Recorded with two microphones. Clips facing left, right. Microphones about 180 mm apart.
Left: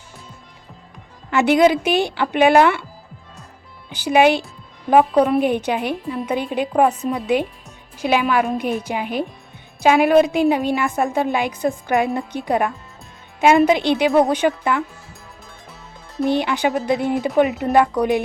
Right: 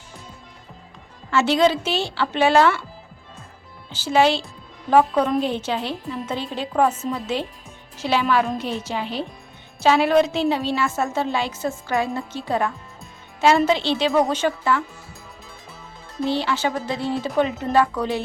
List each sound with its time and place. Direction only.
1.3 s a woman's voice: 15° left (ahead or behind)
3.8 s a woman's voice: 15° left (ahead or behind)
16.2 s a woman's voice: 15° left (ahead or behind)